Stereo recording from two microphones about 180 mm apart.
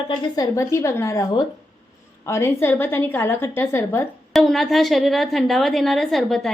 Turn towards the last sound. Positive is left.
turn(degrees=0)  # may be behind; listen again after turning